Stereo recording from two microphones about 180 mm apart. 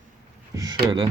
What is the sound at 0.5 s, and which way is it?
Speech, 20° right (ahead or behind).